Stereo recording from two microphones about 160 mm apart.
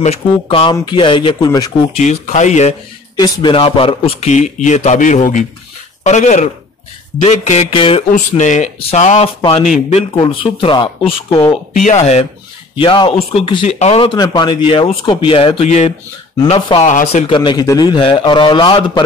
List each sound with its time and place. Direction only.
0.0 s speech: 35° left (ahead or behind)
2.0 s a man's voice: 45° left (ahead or behind)
3.2 s a man's voice: 30° left (ahead or behind)
8.1 s a man's voice: 50° left (ahead or behind)
9.4 s speech: 35° left (ahead or behind)
11.8 s a man's voice: 45° left (ahead or behind)
12.7 s a man's voice: 30° left (ahead or behind)
16.8 s a man's voice: 50° left (ahead or behind)
17.3 s a man's voice: 30° left (ahead or behind)